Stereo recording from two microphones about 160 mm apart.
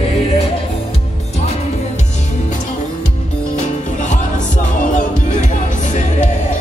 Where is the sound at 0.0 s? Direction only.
40° left (ahead or behind).